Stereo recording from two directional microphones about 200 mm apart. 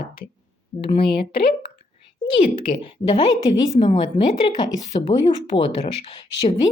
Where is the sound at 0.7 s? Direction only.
25° left (ahead or behind).